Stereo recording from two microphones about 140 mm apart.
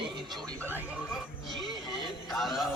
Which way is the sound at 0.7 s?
10° right (ahead or behind).